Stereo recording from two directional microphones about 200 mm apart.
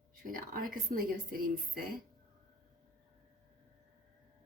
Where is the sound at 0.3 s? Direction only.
45° right (ahead or behind).